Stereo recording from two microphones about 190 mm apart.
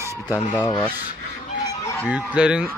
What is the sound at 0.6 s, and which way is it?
Rub, 20° left (ahead or behind).